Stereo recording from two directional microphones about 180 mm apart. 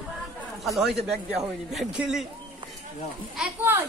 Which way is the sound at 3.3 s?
10° right (ahead or behind).